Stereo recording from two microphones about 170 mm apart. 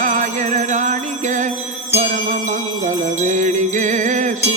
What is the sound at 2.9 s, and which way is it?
Jingle bell, 45° right (ahead or behind).